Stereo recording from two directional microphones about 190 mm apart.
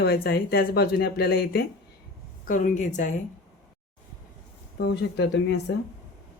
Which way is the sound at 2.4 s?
45° left (ahead or behind).